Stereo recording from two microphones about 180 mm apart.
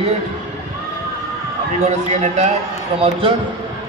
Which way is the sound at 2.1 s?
40° right (ahead or behind).